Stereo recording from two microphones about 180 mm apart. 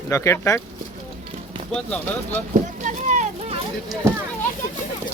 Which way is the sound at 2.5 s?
45° right (ahead or behind).